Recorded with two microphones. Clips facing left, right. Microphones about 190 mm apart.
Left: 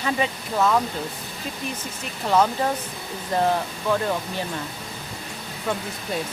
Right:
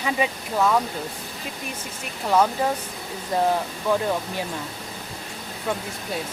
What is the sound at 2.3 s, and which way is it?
Speech, 5° right (ahead or behind).